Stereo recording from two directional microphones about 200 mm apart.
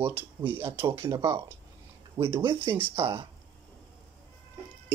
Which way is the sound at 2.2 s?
25° right (ahead or behind).